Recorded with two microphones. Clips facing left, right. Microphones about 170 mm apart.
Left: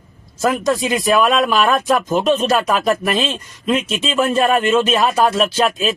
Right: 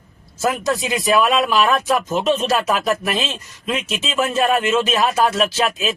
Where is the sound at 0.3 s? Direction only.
Centre (ahead or behind).